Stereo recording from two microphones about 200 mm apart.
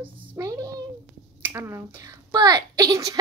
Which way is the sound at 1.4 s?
15° right (ahead or behind).